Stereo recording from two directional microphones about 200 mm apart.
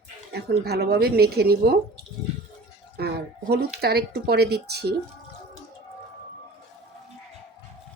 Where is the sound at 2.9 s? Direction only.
55° right (ahead or behind).